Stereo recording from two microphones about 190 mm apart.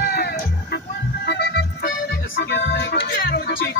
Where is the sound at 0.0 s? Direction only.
55° left (ahead or behind).